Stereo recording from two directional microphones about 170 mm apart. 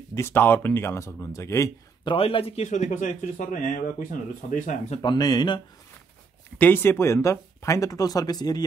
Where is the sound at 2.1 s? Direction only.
35° left (ahead or behind).